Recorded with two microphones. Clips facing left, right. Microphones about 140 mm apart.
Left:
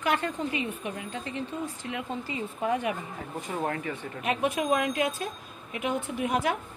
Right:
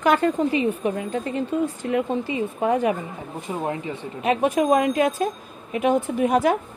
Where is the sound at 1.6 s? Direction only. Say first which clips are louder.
Right 11 dB; 55° right (ahead or behind).